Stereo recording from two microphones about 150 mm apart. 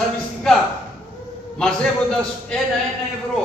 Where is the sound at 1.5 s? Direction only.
5° left (ahead or behind).